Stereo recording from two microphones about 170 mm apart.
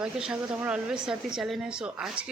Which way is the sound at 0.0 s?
5° right (ahead or behind).